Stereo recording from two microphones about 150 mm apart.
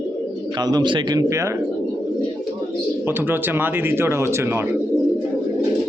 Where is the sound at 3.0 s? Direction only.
15° right (ahead or behind).